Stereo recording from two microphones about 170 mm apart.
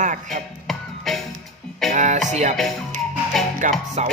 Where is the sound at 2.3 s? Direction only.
40° right (ahead or behind).